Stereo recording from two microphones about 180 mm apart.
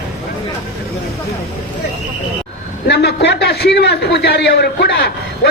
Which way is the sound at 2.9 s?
65° left (ahead or behind).